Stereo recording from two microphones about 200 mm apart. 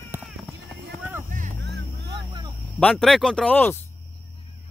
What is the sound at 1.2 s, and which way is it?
Vehicle, 40° right (ahead or behind).